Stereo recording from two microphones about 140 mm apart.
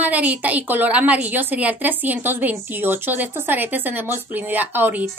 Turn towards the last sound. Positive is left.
turn(degrees=-10)  # may be behind; listen again after turning